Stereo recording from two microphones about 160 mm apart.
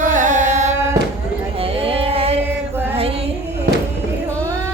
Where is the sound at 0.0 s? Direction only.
50° right (ahead or behind).